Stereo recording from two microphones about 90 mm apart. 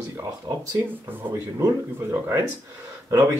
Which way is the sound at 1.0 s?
30° right (ahead or behind).